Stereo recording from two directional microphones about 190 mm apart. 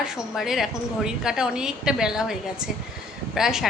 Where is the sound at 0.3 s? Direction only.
Centre (ahead or behind).